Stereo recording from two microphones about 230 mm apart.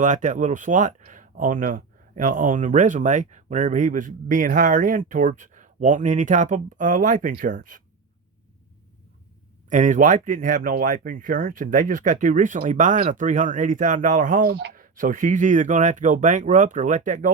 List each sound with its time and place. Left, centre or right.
0.0 s speech: right
9.6 s speech: right